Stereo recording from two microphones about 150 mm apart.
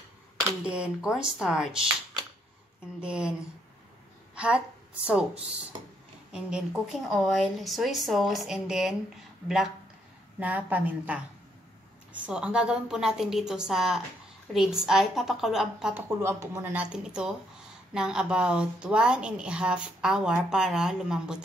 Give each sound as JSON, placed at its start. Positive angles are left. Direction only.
{"t": 0.7, "sound": "a woman's voice", "side_deg": -5}
{"t": 3.0, "sound": "speech", "side_deg": -5}
{"t": 5.0, "sound": "a woman's voice", "side_deg": -5}
{"t": 16.2, "sound": "a woman's voice", "side_deg": -15}